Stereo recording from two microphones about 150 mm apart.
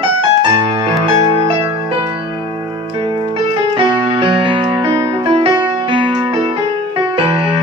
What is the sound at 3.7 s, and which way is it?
Music, 35° right (ahead or behind).